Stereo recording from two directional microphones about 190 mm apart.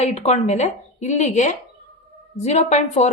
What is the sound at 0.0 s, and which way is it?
A woman's voice, 35° left (ahead or behind).